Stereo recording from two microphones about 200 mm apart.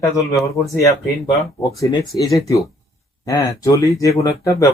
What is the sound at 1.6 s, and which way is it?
Speech, 15° left (ahead or behind).